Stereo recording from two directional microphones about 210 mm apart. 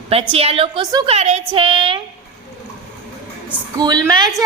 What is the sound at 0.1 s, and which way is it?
A woman's voice, 25° right (ahead or behind).